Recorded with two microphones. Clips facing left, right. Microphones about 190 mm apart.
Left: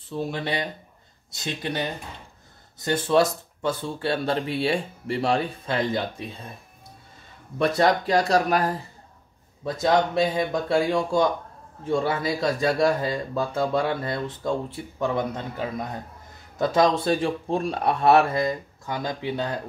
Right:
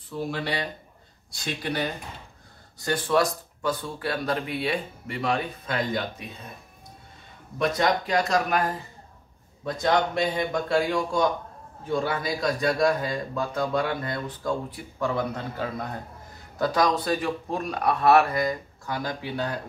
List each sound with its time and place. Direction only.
0.1 s speech: 25° left (ahead or behind)
7.5 s speech: 30° left (ahead or behind)
10.5 s speech: 25° left (ahead or behind)